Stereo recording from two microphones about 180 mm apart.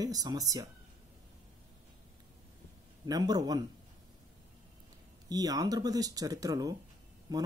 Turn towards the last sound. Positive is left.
turn(degrees=-20)  # may be behind; listen again after turning